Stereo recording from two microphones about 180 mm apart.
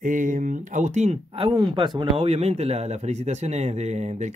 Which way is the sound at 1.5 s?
25° right (ahead or behind).